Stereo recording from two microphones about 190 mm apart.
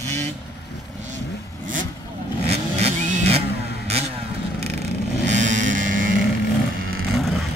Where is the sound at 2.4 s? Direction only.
35° right (ahead or behind).